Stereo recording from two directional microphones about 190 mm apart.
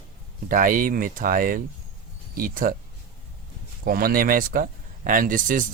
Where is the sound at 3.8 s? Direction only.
50° right (ahead or behind).